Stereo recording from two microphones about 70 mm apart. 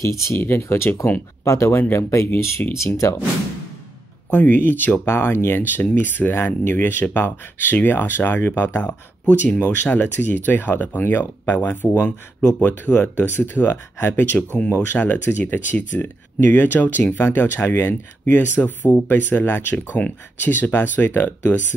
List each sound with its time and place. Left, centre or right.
0.0 s speech: left
0.4 s speech: left
4.3 s speech: left
8.8 s speech: centre
14.1 s speech: centre
14.7 s speech: left